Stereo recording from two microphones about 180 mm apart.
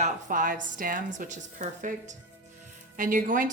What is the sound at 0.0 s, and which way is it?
A woman's voice, 45° right (ahead or behind).